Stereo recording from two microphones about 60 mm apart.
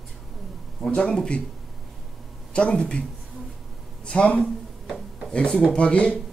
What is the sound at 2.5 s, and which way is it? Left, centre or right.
Speech, centre.